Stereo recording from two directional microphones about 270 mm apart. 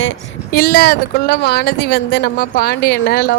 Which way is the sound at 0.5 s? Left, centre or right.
Left.